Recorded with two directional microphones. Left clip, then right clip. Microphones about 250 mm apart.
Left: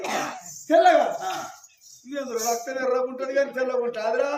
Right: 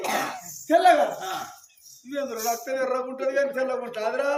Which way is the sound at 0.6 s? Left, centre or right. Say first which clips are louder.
Left 1 dB; centre.